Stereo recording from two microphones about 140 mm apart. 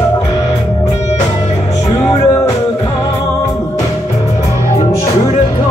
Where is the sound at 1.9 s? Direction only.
25° left (ahead or behind).